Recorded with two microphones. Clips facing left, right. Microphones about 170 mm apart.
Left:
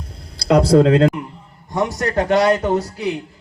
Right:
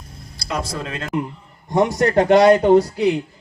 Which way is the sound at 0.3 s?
70° left (ahead or behind).